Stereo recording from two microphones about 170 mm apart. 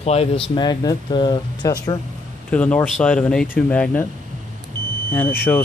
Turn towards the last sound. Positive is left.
turn(degrees=10)  # may be behind; listen again after turning